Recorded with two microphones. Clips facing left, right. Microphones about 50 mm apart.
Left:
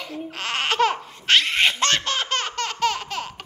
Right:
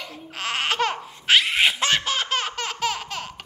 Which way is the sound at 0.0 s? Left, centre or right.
Centre.